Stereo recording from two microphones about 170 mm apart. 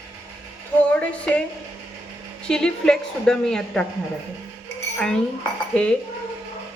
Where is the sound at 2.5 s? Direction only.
5° left (ahead or behind).